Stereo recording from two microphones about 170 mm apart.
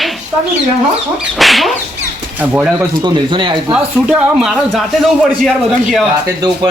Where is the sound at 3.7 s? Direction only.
5° right (ahead or behind).